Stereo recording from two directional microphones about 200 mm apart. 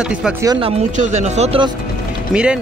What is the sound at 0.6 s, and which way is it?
Speech, 35° right (ahead or behind).